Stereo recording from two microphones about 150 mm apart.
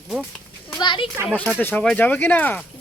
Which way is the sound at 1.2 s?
10° left (ahead or behind).